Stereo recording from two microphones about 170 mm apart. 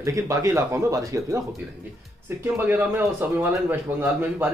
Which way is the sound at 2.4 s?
10° right (ahead or behind).